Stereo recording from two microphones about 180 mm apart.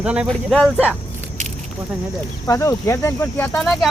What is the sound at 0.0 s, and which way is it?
Speech, 5° right (ahead or behind).